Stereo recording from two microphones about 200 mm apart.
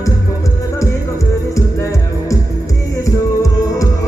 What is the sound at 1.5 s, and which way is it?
Music, 15° left (ahead or behind).